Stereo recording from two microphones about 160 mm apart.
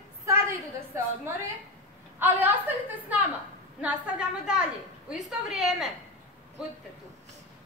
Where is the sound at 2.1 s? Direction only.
10° right (ahead or behind).